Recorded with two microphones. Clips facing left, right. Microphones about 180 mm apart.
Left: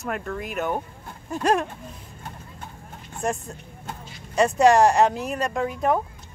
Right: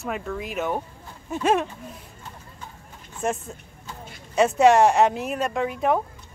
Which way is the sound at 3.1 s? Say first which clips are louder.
Even; centre (ahead or behind).